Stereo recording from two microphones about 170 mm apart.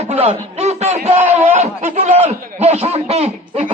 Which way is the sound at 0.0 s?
35° right (ahead or behind).